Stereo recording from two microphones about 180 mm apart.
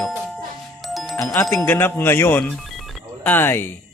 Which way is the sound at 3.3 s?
10° left (ahead or behind).